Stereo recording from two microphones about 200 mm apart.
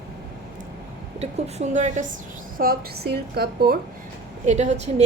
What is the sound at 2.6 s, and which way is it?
A woman's voice, 50° right (ahead or behind).